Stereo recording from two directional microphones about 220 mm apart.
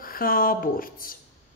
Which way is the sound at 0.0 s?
40° left (ahead or behind).